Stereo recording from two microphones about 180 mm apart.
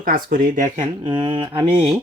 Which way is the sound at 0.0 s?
50° right (ahead or behind).